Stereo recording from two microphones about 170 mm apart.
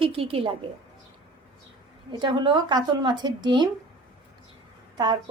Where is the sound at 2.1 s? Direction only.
25° right (ahead or behind).